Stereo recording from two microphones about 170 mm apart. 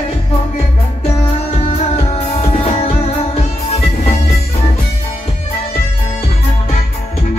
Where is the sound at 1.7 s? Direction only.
35° left (ahead or behind).